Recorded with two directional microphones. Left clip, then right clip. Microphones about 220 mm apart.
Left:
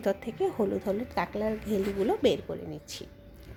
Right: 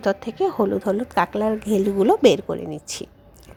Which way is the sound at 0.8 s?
35° right (ahead or behind).